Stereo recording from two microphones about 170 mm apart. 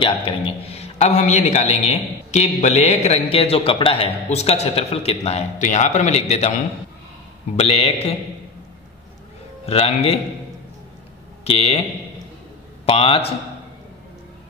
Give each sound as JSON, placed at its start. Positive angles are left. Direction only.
{"t": 0.0, "sound": "a man's voice", "side_deg": 30}
{"t": 7.5, "sound": "a man's voice", "side_deg": 35}
{"t": 9.7, "sound": "a man's voice", "side_deg": 35}
{"t": 11.4, "sound": "a man's voice", "side_deg": 35}
{"t": 12.8, "sound": "a man's voice", "side_deg": 35}